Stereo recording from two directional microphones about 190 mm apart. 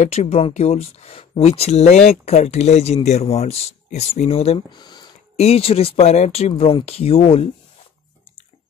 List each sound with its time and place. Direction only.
0.0 s speech: 35° left (ahead or behind)